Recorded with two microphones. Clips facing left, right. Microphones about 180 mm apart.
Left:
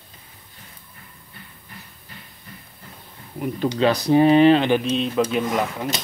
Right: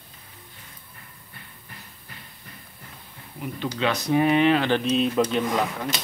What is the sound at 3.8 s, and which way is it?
Speech, 35° left (ahead or behind).